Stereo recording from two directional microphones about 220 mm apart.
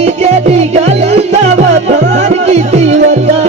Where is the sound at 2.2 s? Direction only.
30° right (ahead or behind).